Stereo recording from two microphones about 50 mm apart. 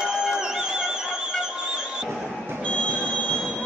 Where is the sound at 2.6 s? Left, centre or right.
Left.